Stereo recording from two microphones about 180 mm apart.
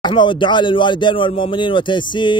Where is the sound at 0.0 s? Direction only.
25° left (ahead or behind).